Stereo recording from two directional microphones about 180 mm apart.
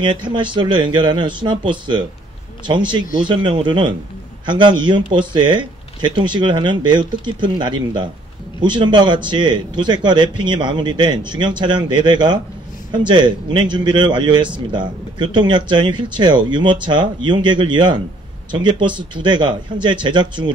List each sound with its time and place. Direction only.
0.0 s a man's voice: 25° right (ahead or behind)